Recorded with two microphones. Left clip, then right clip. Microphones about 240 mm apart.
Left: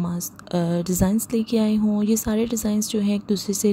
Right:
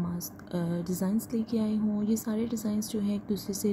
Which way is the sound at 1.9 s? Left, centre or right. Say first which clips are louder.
Left 9 dB; left.